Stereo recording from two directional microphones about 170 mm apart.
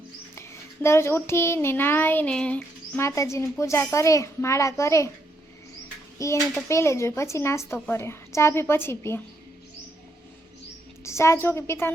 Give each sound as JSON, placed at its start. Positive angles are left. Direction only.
{"t": 0.3, "sound": "a child's voice", "side_deg": 15}
{"t": 6.1, "sound": "a child's voice", "side_deg": 15}
{"t": 11.0, "sound": "a woman's voice", "side_deg": 15}